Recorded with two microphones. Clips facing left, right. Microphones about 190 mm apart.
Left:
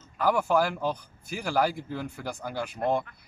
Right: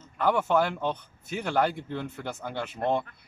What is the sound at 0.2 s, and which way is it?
Speech, 5° left (ahead or behind).